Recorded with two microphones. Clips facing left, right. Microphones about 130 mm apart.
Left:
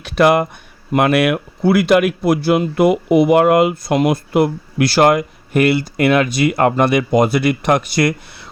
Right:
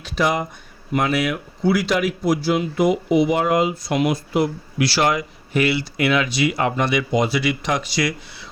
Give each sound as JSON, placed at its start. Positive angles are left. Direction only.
{"t": 0.0, "sound": "a sound", "side_deg": 65}
{"t": 0.9, "sound": "speech", "side_deg": 65}
{"t": 3.9, "sound": "speech", "side_deg": 50}